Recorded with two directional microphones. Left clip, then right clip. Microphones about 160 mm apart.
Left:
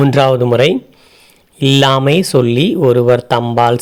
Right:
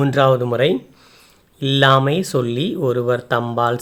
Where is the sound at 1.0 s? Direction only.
15° left (ahead or behind).